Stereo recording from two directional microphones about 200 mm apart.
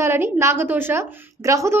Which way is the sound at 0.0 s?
15° right (ahead or behind).